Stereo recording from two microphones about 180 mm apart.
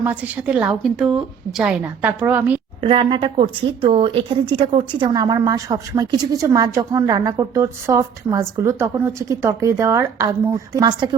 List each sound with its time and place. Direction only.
0.0 s a woman's voice: 10° right (ahead or behind)
2.8 s speech: 30° right (ahead or behind)